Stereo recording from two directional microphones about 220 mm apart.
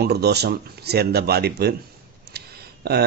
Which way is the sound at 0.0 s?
50° right (ahead or behind).